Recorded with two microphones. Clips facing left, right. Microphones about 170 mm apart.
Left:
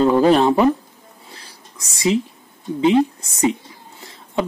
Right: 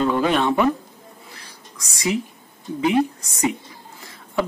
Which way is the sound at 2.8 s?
25° left (ahead or behind).